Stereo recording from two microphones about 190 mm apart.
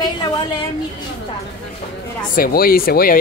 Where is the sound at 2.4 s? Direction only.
50° left (ahead or behind).